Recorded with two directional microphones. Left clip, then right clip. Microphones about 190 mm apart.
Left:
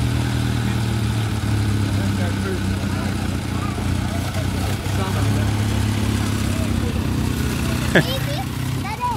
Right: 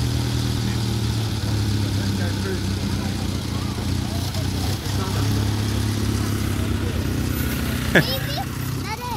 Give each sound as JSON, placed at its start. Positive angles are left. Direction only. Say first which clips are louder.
{"t": 7.9, "sound": "speech", "louder": "even", "side_deg": 0}